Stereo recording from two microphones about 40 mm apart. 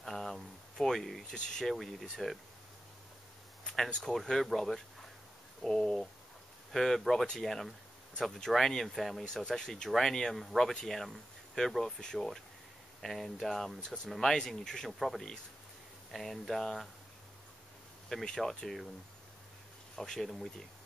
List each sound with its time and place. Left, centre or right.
0.0 s a sound: centre
1.3 s speech: centre
1.7 s speech: centre
3.6 s a sound: centre
4.0 s speech: centre
9.3 s speech: centre
13.0 s speech: centre
14.4 s speech: centre
14.9 s speech: centre
18.1 s speech: centre
20.0 s speech: centre